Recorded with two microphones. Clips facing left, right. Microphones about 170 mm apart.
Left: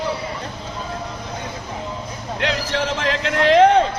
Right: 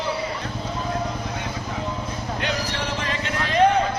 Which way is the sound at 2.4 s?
90° left.